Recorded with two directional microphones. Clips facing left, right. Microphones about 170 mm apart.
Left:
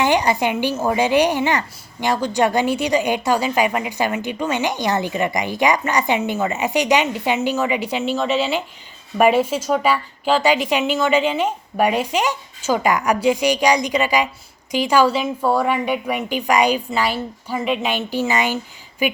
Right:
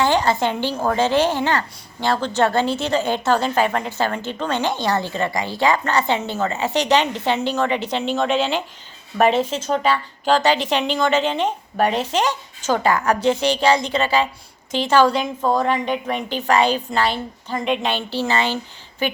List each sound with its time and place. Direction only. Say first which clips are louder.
0.0 s a woman's voice: left 1 dB; 15° left (ahead or behind)